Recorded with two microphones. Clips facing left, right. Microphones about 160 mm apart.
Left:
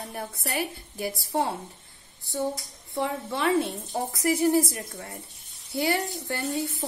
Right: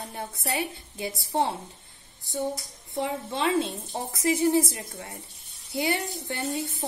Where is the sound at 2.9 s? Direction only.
20° right (ahead or behind).